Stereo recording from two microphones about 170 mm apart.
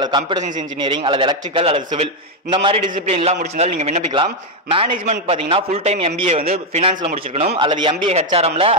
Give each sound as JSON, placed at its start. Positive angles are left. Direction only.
{"t": 0.0, "sound": "a man's voice", "side_deg": -25}